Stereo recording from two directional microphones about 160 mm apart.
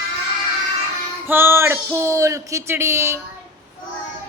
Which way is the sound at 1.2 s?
15° right (ahead or behind).